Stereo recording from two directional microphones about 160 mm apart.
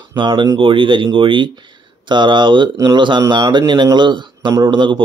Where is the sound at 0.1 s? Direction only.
30° right (ahead or behind).